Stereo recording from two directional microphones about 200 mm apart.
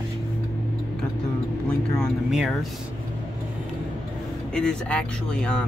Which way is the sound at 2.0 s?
Centre (ahead or behind).